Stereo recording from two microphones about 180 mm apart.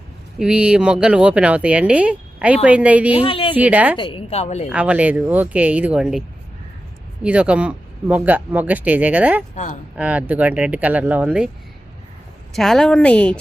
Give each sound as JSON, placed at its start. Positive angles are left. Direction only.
{"t": 0.3, "sound": "speech", "side_deg": -5}
{"t": 3.2, "sound": "speech", "side_deg": 30}
{"t": 3.5, "sound": "speech", "side_deg": -10}
{"t": 3.9, "sound": "a woman's voice", "side_deg": 25}
{"t": 4.7, "sound": "speech", "side_deg": -5}
{"t": 12.5, "sound": "a woman's voice", "side_deg": 0}